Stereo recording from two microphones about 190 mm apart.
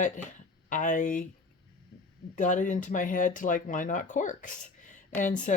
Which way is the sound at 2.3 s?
40° left (ahead or behind).